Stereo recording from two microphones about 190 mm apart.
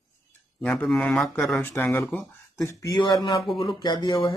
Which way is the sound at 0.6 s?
5° left (ahead or behind).